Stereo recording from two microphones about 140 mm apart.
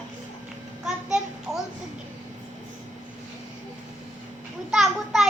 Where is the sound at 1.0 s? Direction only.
5° right (ahead or behind).